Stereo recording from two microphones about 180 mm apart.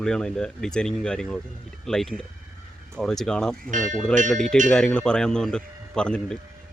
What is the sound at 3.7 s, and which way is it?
Speech, 45° right (ahead or behind).